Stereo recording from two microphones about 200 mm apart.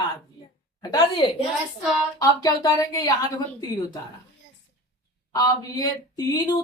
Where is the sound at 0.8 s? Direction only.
20° left (ahead or behind).